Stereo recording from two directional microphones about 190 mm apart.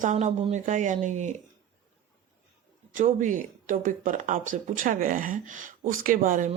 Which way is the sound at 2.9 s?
45° right (ahead or behind).